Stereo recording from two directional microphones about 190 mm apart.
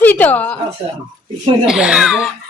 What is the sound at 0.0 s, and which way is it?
Speech, 10° left (ahead or behind).